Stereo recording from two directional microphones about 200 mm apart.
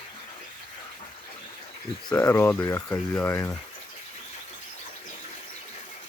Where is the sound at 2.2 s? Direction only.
15° left (ahead or behind).